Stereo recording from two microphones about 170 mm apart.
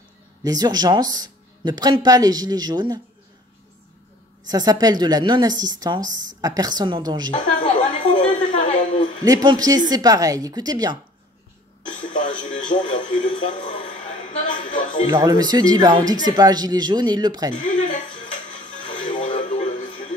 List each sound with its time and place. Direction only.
0.4 s speech: 20° right (ahead or behind)
4.5 s speech: 25° right (ahead or behind)
7.3 s a woman's voice: 45° left (ahead or behind)
9.2 s speech: 25° right (ahead or behind)
11.9 s speech: 45° left (ahead or behind)
13.5 s a sound: 45° left (ahead or behind)
15.1 s speech: 25° right (ahead or behind)
17.6 s music: 50° left (ahead or behind)